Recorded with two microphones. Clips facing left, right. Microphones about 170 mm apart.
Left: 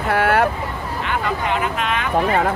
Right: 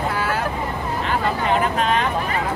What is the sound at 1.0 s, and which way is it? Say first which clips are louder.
Speech: even; 35° right (ahead or behind).